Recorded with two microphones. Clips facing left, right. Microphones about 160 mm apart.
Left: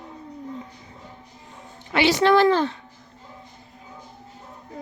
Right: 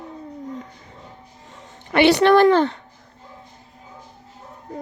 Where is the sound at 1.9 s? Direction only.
60° right (ahead or behind).